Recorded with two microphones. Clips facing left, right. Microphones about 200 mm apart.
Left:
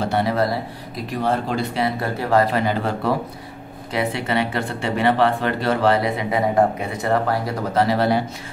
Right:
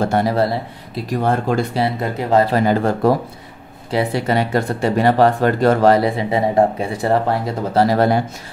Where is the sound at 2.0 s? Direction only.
20° right (ahead or behind).